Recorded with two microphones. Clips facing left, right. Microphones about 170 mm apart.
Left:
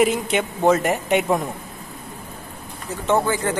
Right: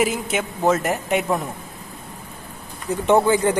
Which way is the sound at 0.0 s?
5° right (ahead or behind).